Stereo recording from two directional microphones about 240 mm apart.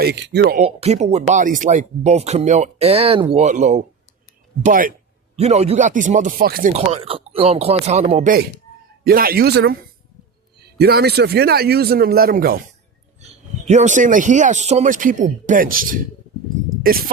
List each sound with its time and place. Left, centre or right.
0.0 s speech: right
13.7 s speech: right